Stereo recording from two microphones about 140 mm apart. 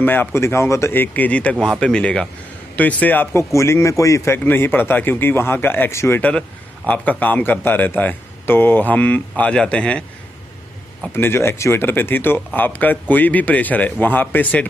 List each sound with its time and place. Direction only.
0.0 s a man's voice: 15° left (ahead or behind)
11.1 s a man's voice: 15° left (ahead or behind)